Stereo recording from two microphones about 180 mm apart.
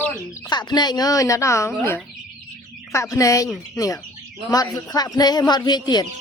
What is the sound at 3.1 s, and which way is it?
A man's voice, 20° left (ahead or behind).